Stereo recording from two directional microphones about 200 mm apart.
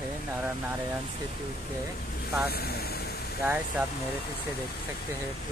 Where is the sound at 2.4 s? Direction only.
50° left (ahead or behind).